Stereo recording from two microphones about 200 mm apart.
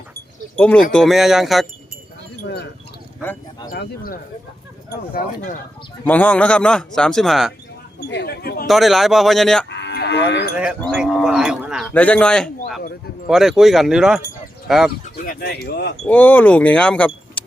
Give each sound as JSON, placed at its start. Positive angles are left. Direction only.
{"t": 0.5, "sound": "speech", "side_deg": 5}
{"t": 3.7, "sound": "speech", "side_deg": 45}
{"t": 6.1, "sound": "speech", "side_deg": 5}
{"t": 8.0, "sound": "speech", "side_deg": 55}
{"t": 8.6, "sound": "speech", "side_deg": 0}
{"t": 9.6, "sound": "cattle", "side_deg": 60}
{"t": 10.6, "sound": "speech", "side_deg": 0}
{"t": 11.9, "sound": "speech", "side_deg": 5}
{"t": 15.1, "sound": "speech", "side_deg": 50}
{"t": 15.6, "sound": "wind chime", "side_deg": 55}
{"t": 16.0, "sound": "speech", "side_deg": 10}